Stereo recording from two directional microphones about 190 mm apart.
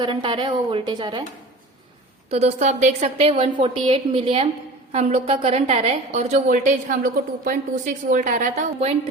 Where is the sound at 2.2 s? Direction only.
35° right (ahead or behind).